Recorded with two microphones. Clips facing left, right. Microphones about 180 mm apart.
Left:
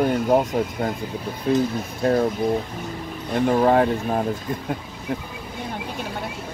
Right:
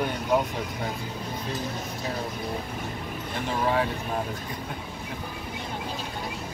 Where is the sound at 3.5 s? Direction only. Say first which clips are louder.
Left 8 dB; 50° left (ahead or behind).